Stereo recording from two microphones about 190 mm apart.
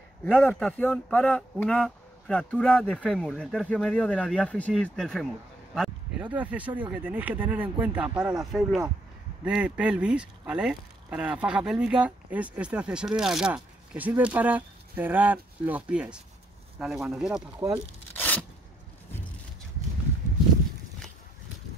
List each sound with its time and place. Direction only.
0.2 s a man's voice: 10° left (ahead or behind)
17.6 s speech: 20° right (ahead or behind)
18.1 s a sound: 10° left (ahead or behind)